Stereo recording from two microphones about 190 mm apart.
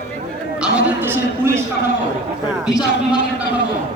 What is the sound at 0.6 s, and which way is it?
Speech, 10° right (ahead or behind).